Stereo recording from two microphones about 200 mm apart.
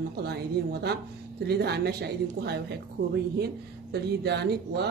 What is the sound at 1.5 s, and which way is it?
Speech, 55° right (ahead or behind).